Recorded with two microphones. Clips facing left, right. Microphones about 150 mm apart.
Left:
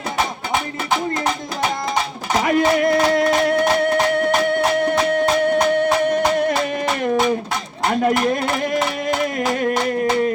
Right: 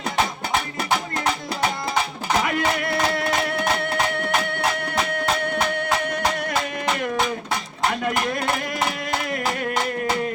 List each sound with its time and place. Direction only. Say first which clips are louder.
2.4 s music: left 12 dB; 40° left (ahead or behind)
7.9 s speech: left 7 dB; 40° left (ahead or behind)